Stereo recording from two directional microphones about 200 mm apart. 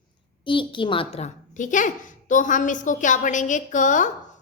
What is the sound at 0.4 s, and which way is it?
A woman's voice, 25° left (ahead or behind).